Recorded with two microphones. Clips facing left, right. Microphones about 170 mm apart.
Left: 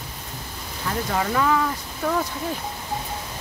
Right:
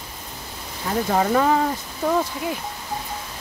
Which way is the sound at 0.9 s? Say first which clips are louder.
Right 5 dB; 35° right (ahead or behind).